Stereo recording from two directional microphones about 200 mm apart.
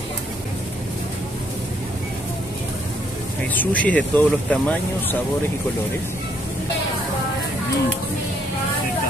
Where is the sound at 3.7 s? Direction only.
5° left (ahead or behind).